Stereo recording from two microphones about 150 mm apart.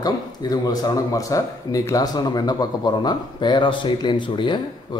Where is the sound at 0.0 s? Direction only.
25° left (ahead or behind).